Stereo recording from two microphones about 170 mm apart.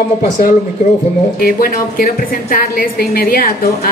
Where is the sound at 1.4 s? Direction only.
60° left (ahead or behind).